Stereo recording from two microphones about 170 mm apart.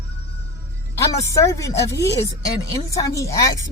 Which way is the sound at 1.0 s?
15° left (ahead or behind).